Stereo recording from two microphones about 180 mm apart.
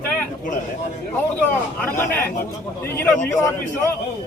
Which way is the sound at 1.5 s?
10° left (ahead or behind).